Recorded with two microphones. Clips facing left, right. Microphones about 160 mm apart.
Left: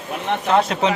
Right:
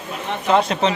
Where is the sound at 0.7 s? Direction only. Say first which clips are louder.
Right 1 dB; 5° left (ahead or behind).